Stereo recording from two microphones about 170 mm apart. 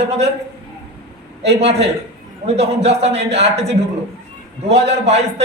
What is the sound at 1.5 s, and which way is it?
A woman's voice, 40° right (ahead or behind).